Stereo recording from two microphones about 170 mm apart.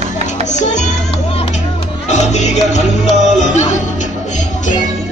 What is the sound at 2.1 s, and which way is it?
Music, 40° left (ahead or behind).